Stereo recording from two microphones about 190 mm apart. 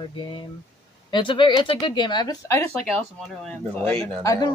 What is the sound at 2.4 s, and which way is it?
Speech, 10° left (ahead or behind).